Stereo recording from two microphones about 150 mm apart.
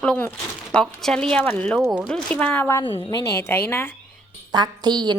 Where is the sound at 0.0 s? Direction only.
10° left (ahead or behind).